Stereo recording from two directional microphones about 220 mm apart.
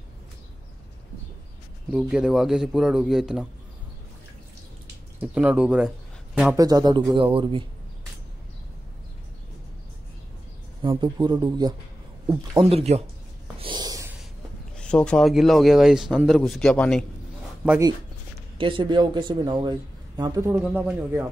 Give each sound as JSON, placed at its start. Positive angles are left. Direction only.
{"t": 1.9, "sound": "speech", "side_deg": -5}
{"t": 5.2, "sound": "speech", "side_deg": -5}
{"t": 10.8, "sound": "speech", "side_deg": -20}
{"t": 13.6, "sound": "snort", "side_deg": -20}
{"t": 14.8, "sound": "speech", "side_deg": 5}
{"t": 17.6, "sound": "speech", "side_deg": -15}